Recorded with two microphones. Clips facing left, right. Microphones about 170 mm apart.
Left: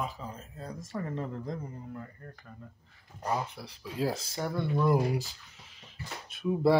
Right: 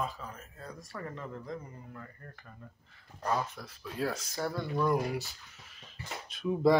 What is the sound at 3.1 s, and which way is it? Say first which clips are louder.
Speech: even; 15° left (ahead or behind).